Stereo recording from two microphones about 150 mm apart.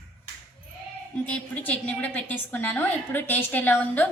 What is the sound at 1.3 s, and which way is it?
A woman's voice, 10° left (ahead or behind).